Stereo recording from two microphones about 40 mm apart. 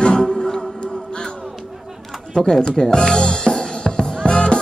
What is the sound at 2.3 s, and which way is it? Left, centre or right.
Music, centre.